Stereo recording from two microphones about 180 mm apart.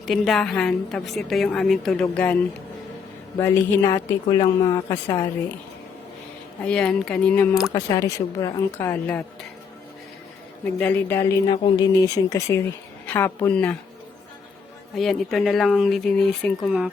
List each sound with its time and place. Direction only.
0.0 s a woman's voice: centre (ahead or behind)
6.7 s a woman's voice: 5° left (ahead or behind)
7.7 s a woman's voice: 20° left (ahead or behind)
10.8 s a woman's voice: 10° left (ahead or behind)
14.9 s a woman's voice: centre (ahead or behind)